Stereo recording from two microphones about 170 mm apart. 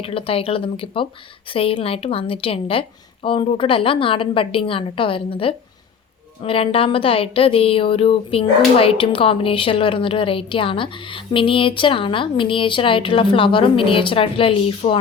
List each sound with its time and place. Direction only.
0.0 s a woman's voice: 35° left (ahead or behind)